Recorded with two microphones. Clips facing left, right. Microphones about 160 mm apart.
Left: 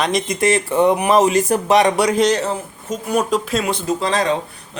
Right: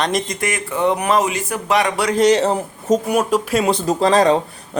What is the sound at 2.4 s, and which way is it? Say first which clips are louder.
Speech: right 4 dB; 35° right (ahead or behind).